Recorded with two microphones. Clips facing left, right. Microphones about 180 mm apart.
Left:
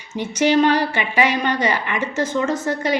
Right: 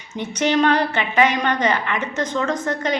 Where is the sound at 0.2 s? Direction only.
10° left (ahead or behind).